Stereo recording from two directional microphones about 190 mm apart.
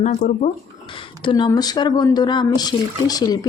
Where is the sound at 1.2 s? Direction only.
25° left (ahead or behind).